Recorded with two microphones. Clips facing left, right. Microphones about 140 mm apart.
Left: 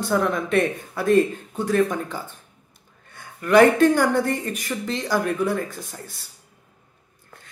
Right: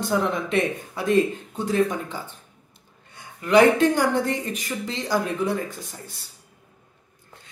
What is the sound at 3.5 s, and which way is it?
Speech, 50° left (ahead or behind).